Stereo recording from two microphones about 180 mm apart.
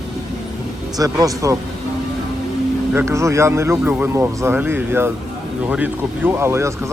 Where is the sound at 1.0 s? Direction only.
20° right (ahead or behind).